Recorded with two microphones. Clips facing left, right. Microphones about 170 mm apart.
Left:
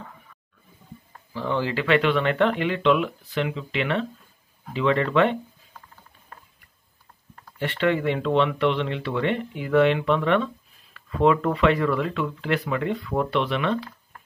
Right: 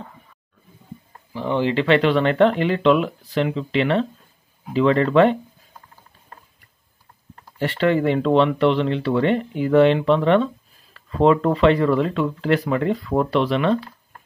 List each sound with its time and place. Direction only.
1.3 s speech: 15° right (ahead or behind); by 5.4 s 35° right (ahead or behind)
7.5 s speech: 35° right (ahead or behind)